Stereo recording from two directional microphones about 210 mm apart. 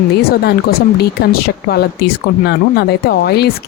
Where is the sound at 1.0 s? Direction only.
50° left (ahead or behind).